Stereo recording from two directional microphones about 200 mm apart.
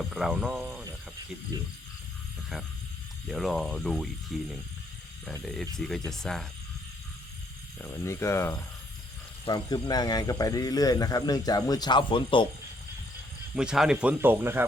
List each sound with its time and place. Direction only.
0.0 s speech: centre (ahead or behind)
3.2 s speech: centre (ahead or behind)
7.8 s speech: 10° left (ahead or behind)
13.6 s speech: 5° right (ahead or behind)